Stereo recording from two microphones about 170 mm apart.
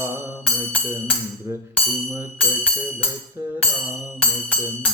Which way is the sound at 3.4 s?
15° right (ahead or behind).